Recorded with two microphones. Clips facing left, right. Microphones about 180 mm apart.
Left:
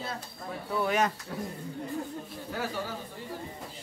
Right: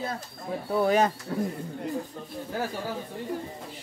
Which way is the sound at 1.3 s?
45° right (ahead or behind).